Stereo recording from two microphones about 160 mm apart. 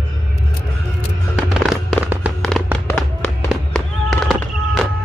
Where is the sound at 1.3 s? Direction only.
Centre (ahead or behind).